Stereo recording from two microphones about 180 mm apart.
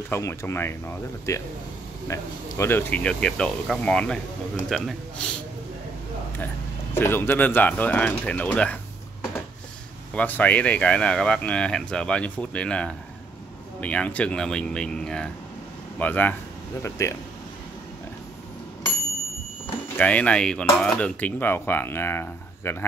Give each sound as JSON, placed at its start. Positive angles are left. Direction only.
{"t": 0.1, "sound": "speech", "side_deg": 15}
{"t": 6.9, "sound": "speech", "side_deg": 15}
{"t": 10.1, "sound": "speech", "side_deg": 10}
{"t": 20.0, "sound": "speech", "side_deg": 5}